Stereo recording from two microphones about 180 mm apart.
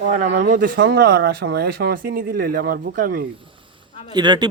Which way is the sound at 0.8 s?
65° right (ahead or behind).